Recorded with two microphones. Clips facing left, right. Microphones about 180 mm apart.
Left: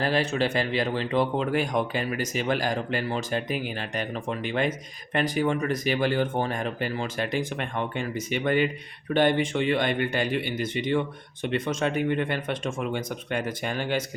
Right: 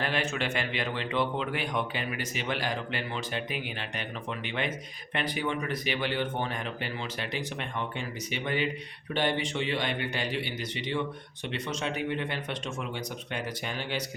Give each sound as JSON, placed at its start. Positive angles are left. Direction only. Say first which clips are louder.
{"t": 0.0, "sound": "speech", "louder": "left 6 dB", "side_deg": 35}